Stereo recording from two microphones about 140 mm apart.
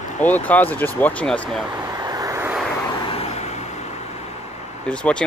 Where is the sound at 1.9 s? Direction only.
25° right (ahead or behind).